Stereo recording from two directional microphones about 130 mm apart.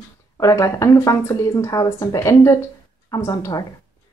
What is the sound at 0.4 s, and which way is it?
Speech, 25° left (ahead or behind).